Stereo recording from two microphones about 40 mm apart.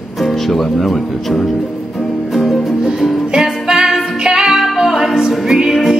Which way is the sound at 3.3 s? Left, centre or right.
Centre.